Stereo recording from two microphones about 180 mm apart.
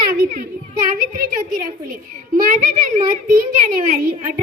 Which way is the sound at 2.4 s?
45° right (ahead or behind).